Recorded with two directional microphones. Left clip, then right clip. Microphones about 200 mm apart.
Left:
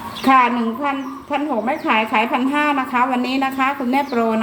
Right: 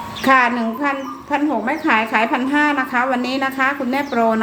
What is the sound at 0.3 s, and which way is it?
A woman's voice, 15° right (ahead or behind).